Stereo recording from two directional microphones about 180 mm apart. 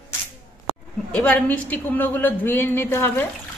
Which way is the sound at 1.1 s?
5° left (ahead or behind).